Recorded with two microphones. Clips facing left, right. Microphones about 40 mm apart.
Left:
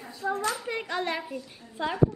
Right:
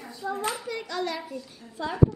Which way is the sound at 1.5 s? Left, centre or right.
Left.